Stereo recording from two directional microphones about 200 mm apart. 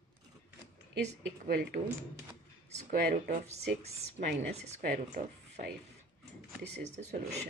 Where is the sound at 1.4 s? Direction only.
50° right (ahead or behind).